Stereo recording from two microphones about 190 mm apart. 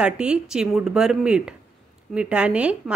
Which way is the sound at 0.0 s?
5° right (ahead or behind).